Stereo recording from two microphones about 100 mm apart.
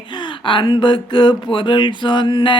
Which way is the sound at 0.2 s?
55° left (ahead or behind).